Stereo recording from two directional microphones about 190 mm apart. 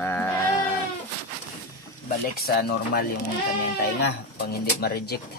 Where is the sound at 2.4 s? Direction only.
55° left (ahead or behind).